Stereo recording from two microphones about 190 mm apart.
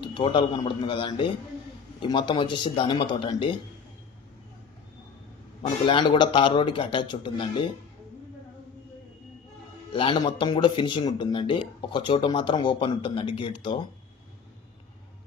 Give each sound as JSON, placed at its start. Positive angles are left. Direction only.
{"t": 0.0, "sound": "a man's voice", "side_deg": 25}
{"t": 5.9, "sound": "speech", "side_deg": 25}
{"t": 9.9, "sound": "speech", "side_deg": 25}